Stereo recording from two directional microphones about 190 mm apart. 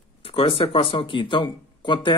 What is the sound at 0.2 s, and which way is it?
Speech, 30° left (ahead or behind).